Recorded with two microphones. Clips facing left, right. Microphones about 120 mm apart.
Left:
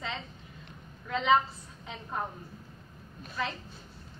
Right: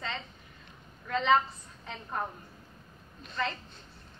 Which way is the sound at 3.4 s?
10° left (ahead or behind).